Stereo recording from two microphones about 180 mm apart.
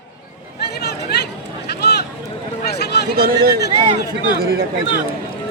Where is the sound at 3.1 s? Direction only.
55° right (ahead or behind).